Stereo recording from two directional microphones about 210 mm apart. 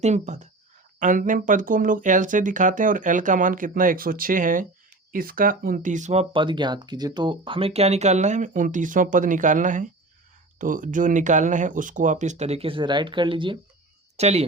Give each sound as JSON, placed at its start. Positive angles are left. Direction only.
{"t": 0.0, "sound": "speech", "side_deg": -35}